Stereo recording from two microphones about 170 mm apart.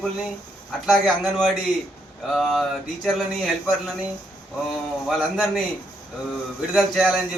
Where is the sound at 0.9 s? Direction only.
Centre (ahead or behind).